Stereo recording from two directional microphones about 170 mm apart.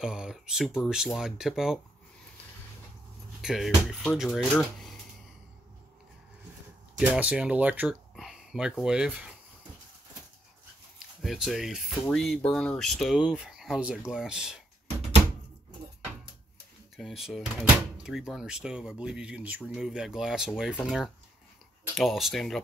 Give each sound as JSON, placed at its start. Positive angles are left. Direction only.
{"t": 0.0, "sound": "speech", "side_deg": -5}
{"t": 3.4, "sound": "speech", "side_deg": 0}
{"t": 7.0, "sound": "speech", "side_deg": -10}
{"t": 11.2, "sound": "speech", "side_deg": 0}
{"t": 16.9, "sound": "speech", "side_deg": 0}